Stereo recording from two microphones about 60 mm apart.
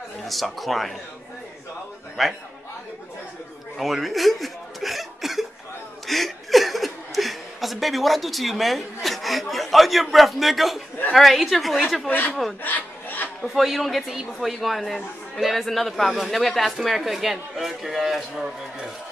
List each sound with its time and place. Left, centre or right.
0.3 s a man's voice: centre
2.2 s a man's voice: centre
3.7 s chuckle: centre
11.1 s a man's voice: centre
12.1 s speech: left
12.6 s filing: left
13.4 s a man's voice: centre